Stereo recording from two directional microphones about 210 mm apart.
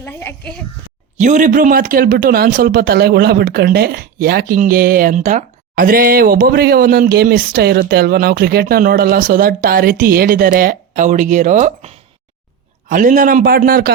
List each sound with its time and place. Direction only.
0.0 s a child's voice: 10° left (ahead or behind)
1.1 s a man's voice: 35° right (ahead or behind)